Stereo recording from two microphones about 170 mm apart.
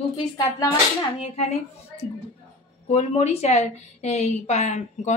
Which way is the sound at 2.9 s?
35° left (ahead or behind).